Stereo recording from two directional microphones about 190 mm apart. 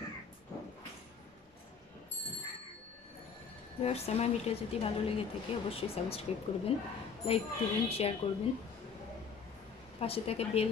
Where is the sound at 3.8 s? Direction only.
35° left (ahead or behind).